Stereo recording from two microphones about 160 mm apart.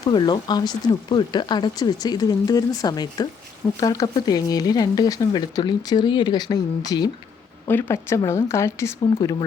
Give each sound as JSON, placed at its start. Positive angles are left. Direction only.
{"t": 0.0, "sound": "speech", "side_deg": 25}
{"t": 7.7, "sound": "a woman's voice", "side_deg": 15}